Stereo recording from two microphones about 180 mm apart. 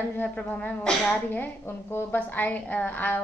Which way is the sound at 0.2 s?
10° left (ahead or behind).